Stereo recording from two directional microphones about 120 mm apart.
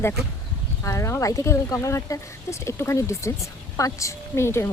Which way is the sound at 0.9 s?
25° left (ahead or behind).